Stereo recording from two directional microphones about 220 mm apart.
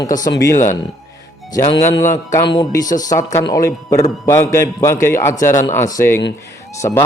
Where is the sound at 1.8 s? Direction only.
10° left (ahead or behind).